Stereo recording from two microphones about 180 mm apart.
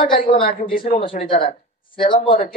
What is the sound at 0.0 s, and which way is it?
Speech, 50° left (ahead or behind).